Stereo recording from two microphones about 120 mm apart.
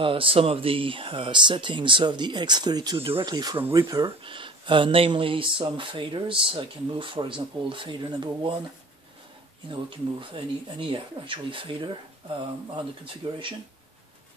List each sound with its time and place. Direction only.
0.0 s speech: 50° right (ahead or behind)
3.0 s speech: 45° right (ahead or behind); by 4.1 s 30° right (ahead or behind)
4.2 s speech: 45° right (ahead or behind)
9.7 s speech: 45° right (ahead or behind)